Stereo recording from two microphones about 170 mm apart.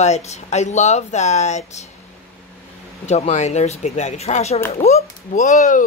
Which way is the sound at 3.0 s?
40° left (ahead or behind).